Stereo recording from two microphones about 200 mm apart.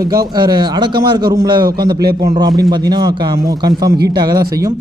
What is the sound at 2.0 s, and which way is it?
Speech, 50° right (ahead or behind).